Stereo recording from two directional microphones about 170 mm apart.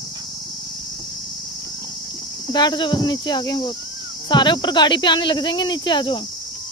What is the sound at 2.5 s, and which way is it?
Speech, 25° left (ahead or behind).